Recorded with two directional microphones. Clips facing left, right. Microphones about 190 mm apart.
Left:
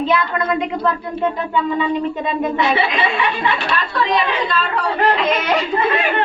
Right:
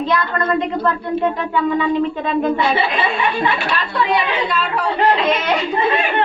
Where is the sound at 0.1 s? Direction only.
10° left (ahead or behind).